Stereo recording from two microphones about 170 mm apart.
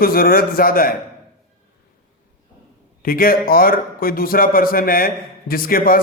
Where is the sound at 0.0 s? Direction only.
60° left (ahead or behind).